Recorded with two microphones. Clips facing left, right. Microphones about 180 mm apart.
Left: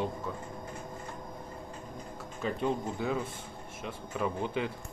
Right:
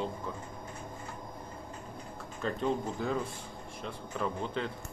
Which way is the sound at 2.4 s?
5° left (ahead or behind).